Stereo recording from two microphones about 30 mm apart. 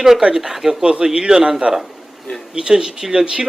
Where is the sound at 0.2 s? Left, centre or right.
Right.